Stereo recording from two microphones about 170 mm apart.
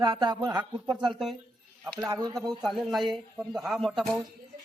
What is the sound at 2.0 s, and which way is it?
Speech, 20° right (ahead or behind).